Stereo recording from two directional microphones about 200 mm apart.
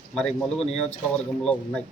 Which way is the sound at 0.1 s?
5° left (ahead or behind).